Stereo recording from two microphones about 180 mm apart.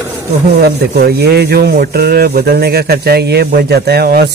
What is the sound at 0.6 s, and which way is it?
Speech, 60° right (ahead or behind).